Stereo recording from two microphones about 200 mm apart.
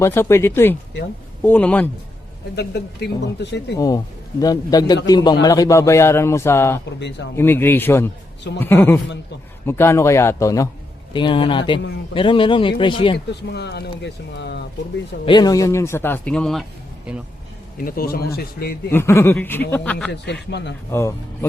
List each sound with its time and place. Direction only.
0.0 s a man's voice: 10° left (ahead or behind)
2.6 s speech: 55° left (ahead or behind)
3.8 s a man's voice: 20° left (ahead or behind)
13.5 s speech: 55° left (ahead or behind)
15.2 s a man's voice: 20° left (ahead or behind); by 16.6 s centre (ahead or behind)
17.7 s speech: 45° left (ahead or behind)
18.9 s a man's voice: 10° left (ahead or behind)
20.1 s speech: 60° left (ahead or behind)